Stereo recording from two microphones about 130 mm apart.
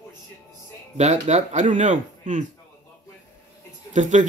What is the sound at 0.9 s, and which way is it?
Speech, 60° right (ahead or behind).